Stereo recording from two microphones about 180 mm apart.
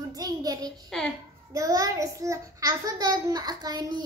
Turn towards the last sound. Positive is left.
turn(degrees=-20)  # may be behind; listen again after turning